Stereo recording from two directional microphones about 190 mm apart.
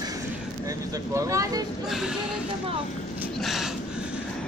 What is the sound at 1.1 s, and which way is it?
Vehicle, 15° right (ahead or behind).